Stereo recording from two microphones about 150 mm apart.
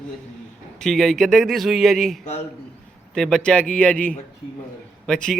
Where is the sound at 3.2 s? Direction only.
5° left (ahead or behind).